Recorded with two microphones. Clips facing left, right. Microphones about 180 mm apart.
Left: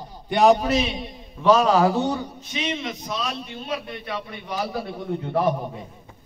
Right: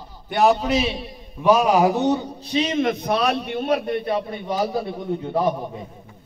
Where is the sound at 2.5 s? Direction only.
35° right (ahead or behind).